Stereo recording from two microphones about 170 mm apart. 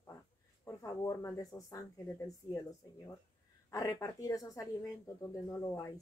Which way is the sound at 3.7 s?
20° left (ahead or behind).